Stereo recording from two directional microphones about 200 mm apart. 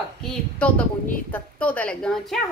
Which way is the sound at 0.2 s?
5° left (ahead or behind).